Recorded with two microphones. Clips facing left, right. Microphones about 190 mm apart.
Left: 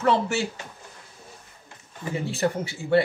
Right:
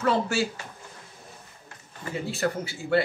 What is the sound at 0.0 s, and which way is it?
Speech, 25° left (ahead or behind).